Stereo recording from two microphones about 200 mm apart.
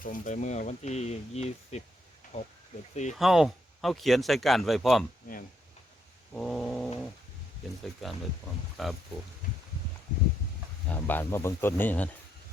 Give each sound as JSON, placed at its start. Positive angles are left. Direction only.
{"t": 0.0, "sound": "speech", "side_deg": 40}
{"t": 3.2, "sound": "speech", "side_deg": 0}
{"t": 6.3, "sound": "speech", "side_deg": 5}
{"t": 8.0, "sound": "speech", "side_deg": 0}
{"t": 10.9, "sound": "speech", "side_deg": 10}